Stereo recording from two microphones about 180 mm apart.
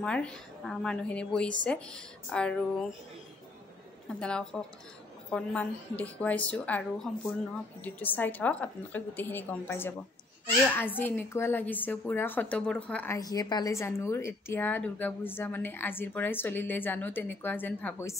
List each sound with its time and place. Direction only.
0.0 s a woman's voice: 5° left (ahead or behind)
4.1 s a woman's voice: 5° left (ahead or behind)